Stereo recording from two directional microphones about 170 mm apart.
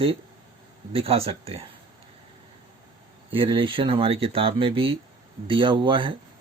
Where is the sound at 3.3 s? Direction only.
30° right (ahead or behind).